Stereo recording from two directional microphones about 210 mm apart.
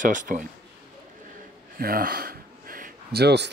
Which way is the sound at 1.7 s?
45° right (ahead or behind).